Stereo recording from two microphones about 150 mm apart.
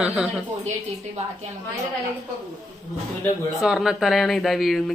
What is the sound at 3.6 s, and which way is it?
Speech, 5° right (ahead or behind).